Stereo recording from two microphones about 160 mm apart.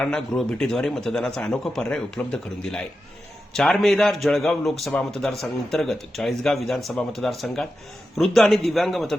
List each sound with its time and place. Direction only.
0.0 s speech: 5° left (ahead or behind)